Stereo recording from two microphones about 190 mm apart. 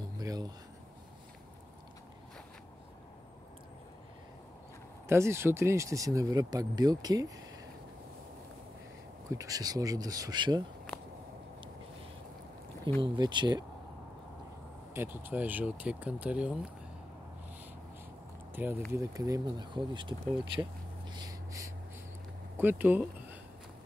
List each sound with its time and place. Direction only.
0.2 s a sound: 20° right (ahead or behind)
5.0 s speech: 15° right (ahead or behind)
9.3 s speech: 20° right (ahead or behind)
13.0 s speech: 25° right (ahead or behind)
15.0 s speech: 10° right (ahead or behind)
18.5 s speech: 10° right (ahead or behind)
21.1 s a sound: 20° right (ahead or behind)
22.6 s speech: 10° right (ahead or behind)